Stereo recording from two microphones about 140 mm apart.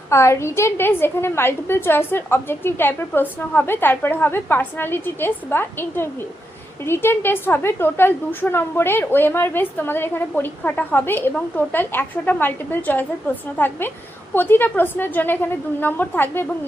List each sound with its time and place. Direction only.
0.1 s a woman's voice: 20° left (ahead or behind)